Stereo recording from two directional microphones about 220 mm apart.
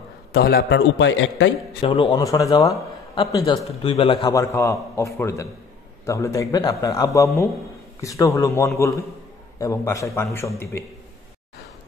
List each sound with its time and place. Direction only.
0.3 s a man's voice: 45° left (ahead or behind)
1.8 s a man's voice: 25° left (ahead or behind)